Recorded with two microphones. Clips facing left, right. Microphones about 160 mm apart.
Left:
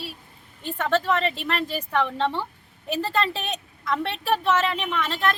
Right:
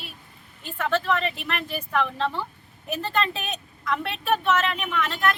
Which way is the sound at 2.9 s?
35° left (ahead or behind).